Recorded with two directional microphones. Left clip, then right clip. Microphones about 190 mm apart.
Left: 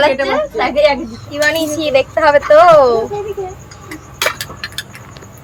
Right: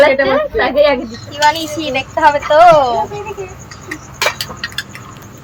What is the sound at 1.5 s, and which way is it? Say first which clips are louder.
A woman's voice: left 3 dB; 50° left (ahead or behind).